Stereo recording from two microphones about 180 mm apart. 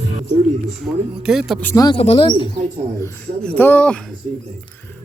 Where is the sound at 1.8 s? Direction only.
30° left (ahead or behind).